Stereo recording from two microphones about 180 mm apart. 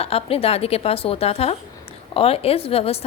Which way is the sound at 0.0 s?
30° left (ahead or behind).